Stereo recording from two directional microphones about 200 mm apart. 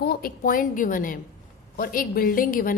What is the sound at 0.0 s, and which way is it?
A woman's voice, 50° left (ahead or behind).